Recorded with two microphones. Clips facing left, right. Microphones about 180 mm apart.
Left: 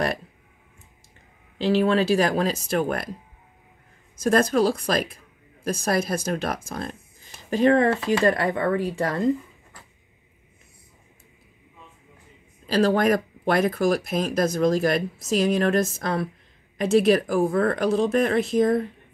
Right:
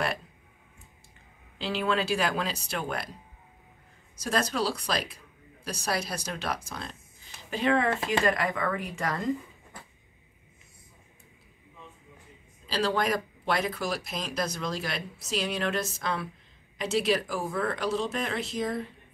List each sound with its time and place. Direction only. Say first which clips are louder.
1.6 s speech: left 8 dB; 40° left (ahead or behind)
4.2 s speech: left 9 dB; 50° left (ahead or behind); by 9.3 s 30° left (ahead or behind)
12.6 s speech: left 8 dB; 50° left (ahead or behind)